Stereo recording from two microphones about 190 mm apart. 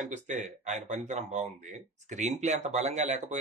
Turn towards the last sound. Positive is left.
turn(degrees=-35)  # may be behind; listen again after turning